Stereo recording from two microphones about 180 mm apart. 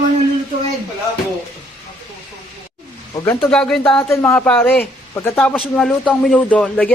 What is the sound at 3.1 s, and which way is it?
Speech, 15° left (ahead or behind).